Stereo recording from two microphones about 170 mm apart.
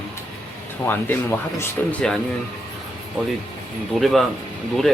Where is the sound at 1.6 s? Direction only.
5° left (ahead or behind).